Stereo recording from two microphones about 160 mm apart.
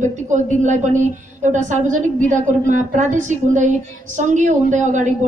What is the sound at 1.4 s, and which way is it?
A woman's voice, 50° right (ahead or behind).